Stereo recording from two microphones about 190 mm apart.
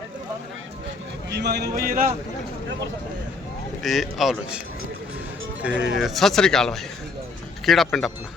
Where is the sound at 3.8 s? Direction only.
Centre (ahead or behind).